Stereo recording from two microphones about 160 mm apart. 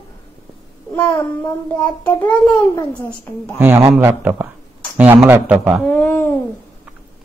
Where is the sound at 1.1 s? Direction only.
10° left (ahead or behind).